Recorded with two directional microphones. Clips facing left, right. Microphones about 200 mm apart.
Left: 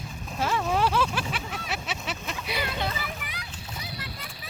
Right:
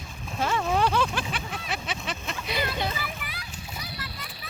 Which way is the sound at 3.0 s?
20° left (ahead or behind).